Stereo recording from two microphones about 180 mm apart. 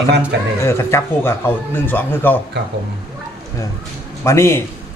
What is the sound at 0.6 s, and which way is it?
Speech, 15° left (ahead or behind).